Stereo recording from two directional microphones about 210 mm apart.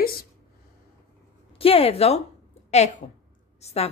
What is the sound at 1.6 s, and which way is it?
A woman's voice, 25° left (ahead or behind).